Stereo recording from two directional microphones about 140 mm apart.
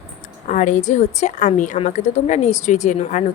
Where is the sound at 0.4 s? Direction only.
65° left (ahead or behind).